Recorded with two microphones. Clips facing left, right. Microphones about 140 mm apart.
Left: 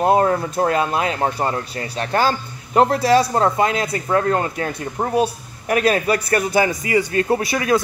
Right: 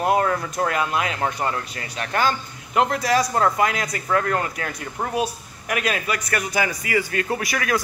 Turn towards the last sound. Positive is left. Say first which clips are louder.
# left 6 dB
turn(degrees=25)  # may be behind; listen again after turning